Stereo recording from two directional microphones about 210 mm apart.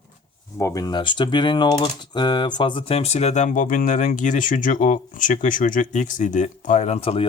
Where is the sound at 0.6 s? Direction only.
15° left (ahead or behind).